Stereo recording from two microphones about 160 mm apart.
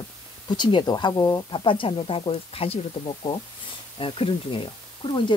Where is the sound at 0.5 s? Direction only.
30° left (ahead or behind).